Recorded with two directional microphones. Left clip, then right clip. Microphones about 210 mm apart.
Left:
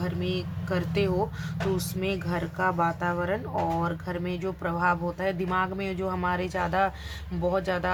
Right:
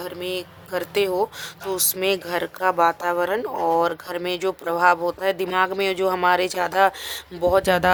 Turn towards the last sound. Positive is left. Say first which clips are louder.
# right 9 dB
turn(degrees=-55)  # may be behind; listen again after turning